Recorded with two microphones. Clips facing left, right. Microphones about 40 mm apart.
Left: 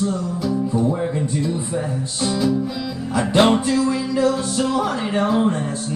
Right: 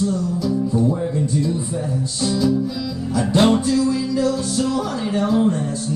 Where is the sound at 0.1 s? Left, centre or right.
Left.